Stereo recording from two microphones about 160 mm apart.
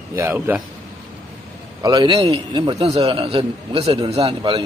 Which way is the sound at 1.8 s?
25° right (ahead or behind).